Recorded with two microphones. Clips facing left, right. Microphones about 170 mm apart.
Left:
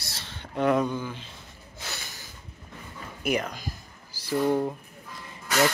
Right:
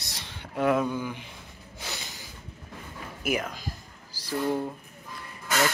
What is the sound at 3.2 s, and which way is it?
Speech, 5° right (ahead or behind).